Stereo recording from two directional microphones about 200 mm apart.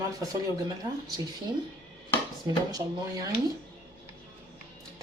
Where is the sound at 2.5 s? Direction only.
20° right (ahead or behind).